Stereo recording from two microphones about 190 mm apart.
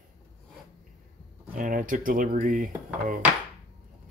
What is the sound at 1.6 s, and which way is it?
Speech, 45° right (ahead or behind).